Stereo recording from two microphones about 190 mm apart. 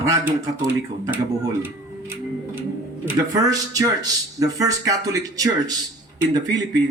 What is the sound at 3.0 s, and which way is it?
Speech, 15° right (ahead or behind).